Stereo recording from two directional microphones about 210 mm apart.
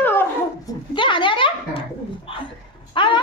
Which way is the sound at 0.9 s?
25° left (ahead or behind).